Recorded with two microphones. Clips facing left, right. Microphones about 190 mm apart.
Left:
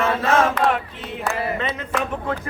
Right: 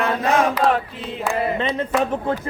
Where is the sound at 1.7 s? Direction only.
30° right (ahead or behind).